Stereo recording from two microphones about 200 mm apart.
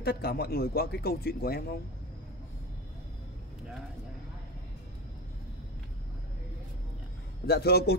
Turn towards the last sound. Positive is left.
turn(degrees=55)  # may be behind; listen again after turning